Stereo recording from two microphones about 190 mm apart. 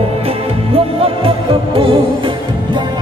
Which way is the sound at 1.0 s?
30° right (ahead or behind).